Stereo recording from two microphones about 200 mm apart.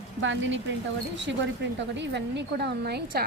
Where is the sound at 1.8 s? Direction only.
60° right (ahead or behind).